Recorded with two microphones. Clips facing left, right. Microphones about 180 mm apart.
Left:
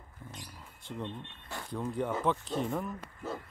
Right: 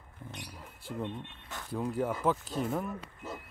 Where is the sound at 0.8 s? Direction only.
10° right (ahead or behind).